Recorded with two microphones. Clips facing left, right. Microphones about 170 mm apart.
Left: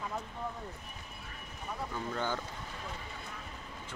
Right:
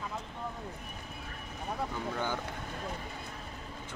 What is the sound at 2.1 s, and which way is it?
Speech, 10° right (ahead or behind).